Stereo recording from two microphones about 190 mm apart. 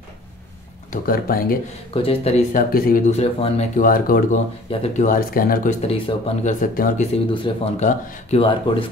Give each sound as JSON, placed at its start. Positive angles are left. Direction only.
{"t": 1.0, "sound": "speech", "side_deg": 50}
{"t": 2.0, "sound": "speech", "side_deg": 30}
{"t": 2.7, "sound": "speech", "side_deg": 50}
{"t": 3.1, "sound": "speech", "side_deg": 30}
{"t": 3.7, "sound": "speech", "side_deg": 50}
{"t": 4.6, "sound": "speech", "side_deg": 35}
{"t": 6.6, "sound": "speech", "side_deg": 45}
{"t": 7.4, "sound": "speech", "side_deg": 35}